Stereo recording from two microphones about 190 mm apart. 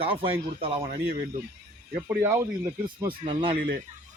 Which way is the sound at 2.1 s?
15° right (ahead or behind).